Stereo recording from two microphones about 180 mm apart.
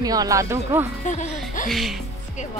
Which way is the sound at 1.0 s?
45° left (ahead or behind).